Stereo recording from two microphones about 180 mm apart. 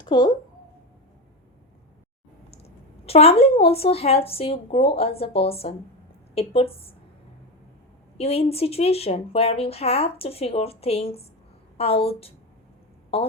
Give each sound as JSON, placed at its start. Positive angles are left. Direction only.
{"t": 0.0, "sound": "speech", "side_deg": 25}
{"t": 2.5, "sound": "a woman's voice", "side_deg": 35}
{"t": 8.2, "sound": "a woman's voice", "side_deg": 35}